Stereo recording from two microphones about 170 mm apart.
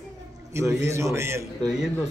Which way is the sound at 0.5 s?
15° right (ahead or behind).